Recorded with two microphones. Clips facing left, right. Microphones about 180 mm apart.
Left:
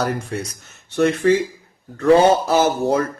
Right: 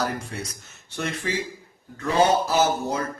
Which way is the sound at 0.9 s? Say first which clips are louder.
Left 13 dB; 60° left (ahead or behind).